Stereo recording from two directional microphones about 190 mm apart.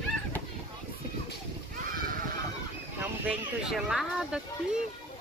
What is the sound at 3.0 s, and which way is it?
Speech, 5° right (ahead or behind).